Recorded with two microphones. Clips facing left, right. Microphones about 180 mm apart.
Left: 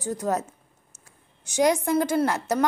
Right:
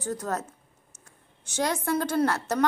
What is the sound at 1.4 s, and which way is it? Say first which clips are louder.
A woman's voice: left 6 dB; 15° left (ahead or behind).